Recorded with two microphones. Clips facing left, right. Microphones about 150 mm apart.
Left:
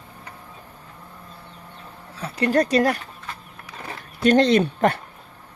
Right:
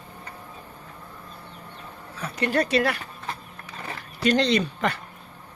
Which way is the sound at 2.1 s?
35° left (ahead or behind).